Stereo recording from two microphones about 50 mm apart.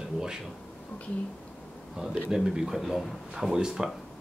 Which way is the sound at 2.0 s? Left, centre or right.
Centre.